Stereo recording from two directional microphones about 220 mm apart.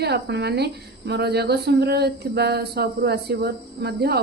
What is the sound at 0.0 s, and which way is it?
Speech, 50° right (ahead or behind).